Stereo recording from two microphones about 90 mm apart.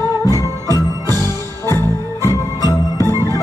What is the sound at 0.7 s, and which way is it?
Music, 40° right (ahead or behind).